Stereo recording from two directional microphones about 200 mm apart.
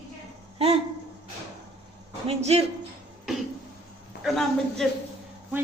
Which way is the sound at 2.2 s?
30° right (ahead or behind).